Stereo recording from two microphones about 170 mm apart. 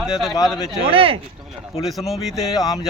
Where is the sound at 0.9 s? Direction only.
35° right (ahead or behind).